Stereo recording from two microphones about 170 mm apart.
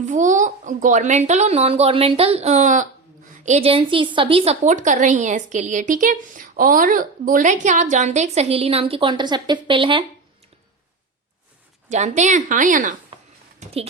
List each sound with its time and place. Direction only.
0.0 s a woman's voice: 50° right (ahead or behind); by 10.0 s 30° right (ahead or behind)
11.9 s a woman's voice: 45° right (ahead or behind)